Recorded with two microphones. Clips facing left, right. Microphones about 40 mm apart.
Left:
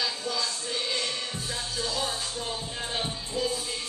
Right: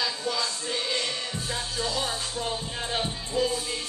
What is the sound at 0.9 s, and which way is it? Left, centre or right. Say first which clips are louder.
Music: right 1 dB; right.